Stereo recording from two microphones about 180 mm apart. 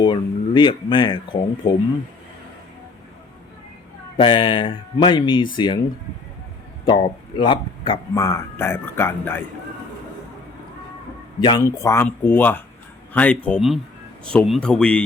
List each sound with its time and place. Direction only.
0.0 s speech: 25° left (ahead or behind)
4.2 s speech: 25° left (ahead or behind)
6.8 s speech: 25° left (ahead or behind)
11.3 s speech: 25° left (ahead or behind); by 15.0 s 5° left (ahead or behind)